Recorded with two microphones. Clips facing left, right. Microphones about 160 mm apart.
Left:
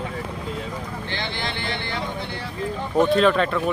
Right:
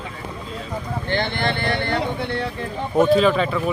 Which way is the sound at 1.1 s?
55° right (ahead or behind).